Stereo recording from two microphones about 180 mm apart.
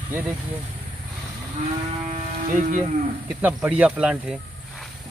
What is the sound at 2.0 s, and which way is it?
Vehicle, 40° right (ahead or behind).